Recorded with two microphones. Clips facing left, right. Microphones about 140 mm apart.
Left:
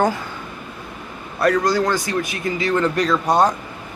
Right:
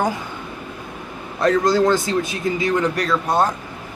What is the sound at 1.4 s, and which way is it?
A man's voice, 20° right (ahead or behind).